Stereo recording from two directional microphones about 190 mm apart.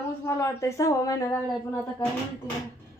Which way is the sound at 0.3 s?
15° left (ahead or behind).